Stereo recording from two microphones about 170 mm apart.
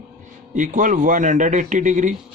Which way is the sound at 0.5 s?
50° right (ahead or behind).